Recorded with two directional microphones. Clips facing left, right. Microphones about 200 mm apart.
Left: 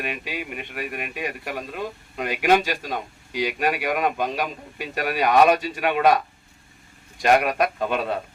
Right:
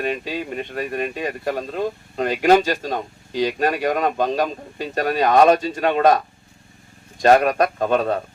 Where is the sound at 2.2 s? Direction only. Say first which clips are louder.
Right 4 dB; 45° right (ahead or behind).